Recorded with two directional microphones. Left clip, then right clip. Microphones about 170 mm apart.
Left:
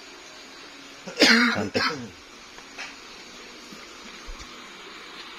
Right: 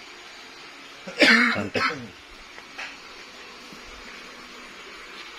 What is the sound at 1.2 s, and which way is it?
Throat clearing, 90° left.